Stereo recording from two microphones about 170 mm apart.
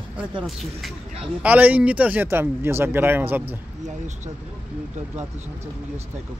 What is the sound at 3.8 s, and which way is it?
Speech, 45° right (ahead or behind).